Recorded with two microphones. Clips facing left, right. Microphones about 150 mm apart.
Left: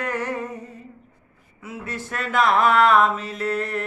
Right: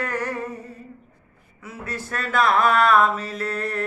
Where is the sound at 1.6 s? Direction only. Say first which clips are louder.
Even; 20° left (ahead or behind).